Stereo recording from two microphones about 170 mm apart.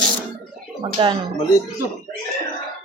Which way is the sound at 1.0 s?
30° right (ahead or behind).